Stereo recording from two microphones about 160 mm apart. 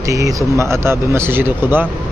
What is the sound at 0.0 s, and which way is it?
Speech, 20° right (ahead or behind).